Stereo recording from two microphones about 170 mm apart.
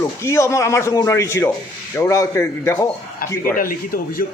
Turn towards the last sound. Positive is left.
turn(degrees=55)  # may be behind; listen again after turning